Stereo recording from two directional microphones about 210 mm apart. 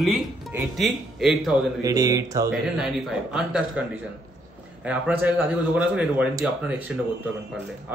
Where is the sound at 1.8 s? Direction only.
15° right (ahead or behind).